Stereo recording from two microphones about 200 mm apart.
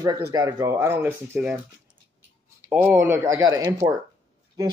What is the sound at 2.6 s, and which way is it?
A man's voice, 10° right (ahead or behind).